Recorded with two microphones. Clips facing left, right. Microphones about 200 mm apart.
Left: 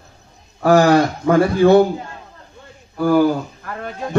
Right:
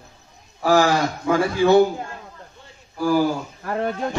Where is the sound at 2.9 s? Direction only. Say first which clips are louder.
Left 4 dB; 60° left (ahead or behind).